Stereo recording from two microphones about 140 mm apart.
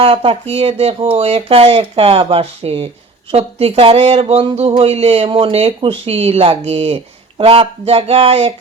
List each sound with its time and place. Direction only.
0.0 s speech: 40° right (ahead or behind)